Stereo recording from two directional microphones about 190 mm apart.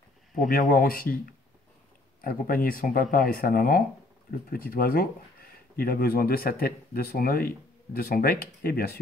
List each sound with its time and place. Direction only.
0.3 s speech: 45° left (ahead or behind)
2.2 s speech: 50° left (ahead or behind)